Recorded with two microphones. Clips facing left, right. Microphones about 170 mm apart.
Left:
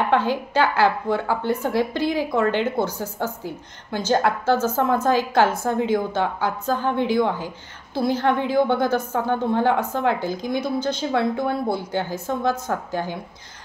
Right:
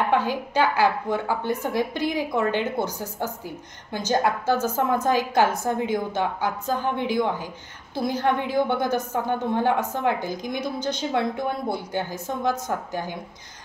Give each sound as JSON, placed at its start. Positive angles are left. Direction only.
{"t": 0.1, "sound": "a woman's voice", "side_deg": -10}
{"t": 4.5, "sound": "a woman's voice", "side_deg": -15}